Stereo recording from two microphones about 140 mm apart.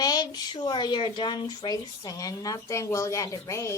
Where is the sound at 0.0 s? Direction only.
30° left (ahead or behind).